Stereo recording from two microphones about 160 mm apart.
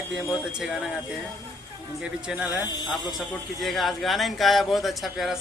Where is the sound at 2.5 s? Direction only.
25° left (ahead or behind).